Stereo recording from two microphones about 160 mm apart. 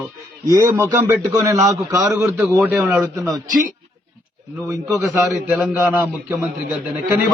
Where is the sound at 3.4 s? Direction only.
55° right (ahead or behind).